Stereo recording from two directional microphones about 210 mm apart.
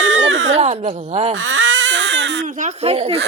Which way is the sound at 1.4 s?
65° right (ahead or behind).